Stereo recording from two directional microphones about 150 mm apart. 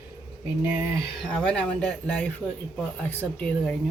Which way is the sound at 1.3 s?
5° left (ahead or behind).